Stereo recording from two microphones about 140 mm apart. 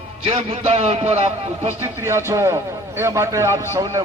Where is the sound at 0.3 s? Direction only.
45° right (ahead or behind).